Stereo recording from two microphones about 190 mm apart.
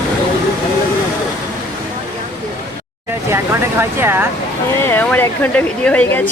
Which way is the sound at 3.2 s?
15° right (ahead or behind).